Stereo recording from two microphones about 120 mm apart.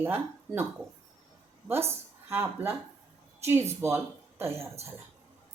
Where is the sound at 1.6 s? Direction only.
20° right (ahead or behind).